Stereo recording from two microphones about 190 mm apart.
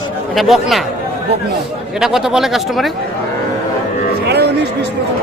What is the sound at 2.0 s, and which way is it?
Speech, centre (ahead or behind).